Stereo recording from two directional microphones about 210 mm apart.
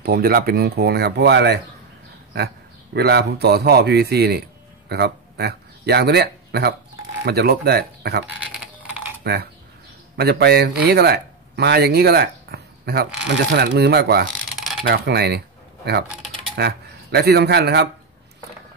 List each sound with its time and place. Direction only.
0.0 s a man's voice: 45° right (ahead or behind)